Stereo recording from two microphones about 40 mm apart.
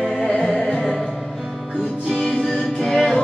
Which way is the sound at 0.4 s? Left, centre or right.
Centre.